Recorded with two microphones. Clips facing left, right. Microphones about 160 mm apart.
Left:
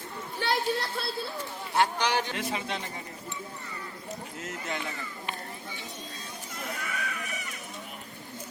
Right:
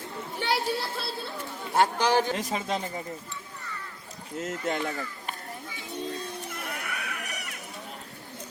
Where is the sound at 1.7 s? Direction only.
45° right (ahead or behind).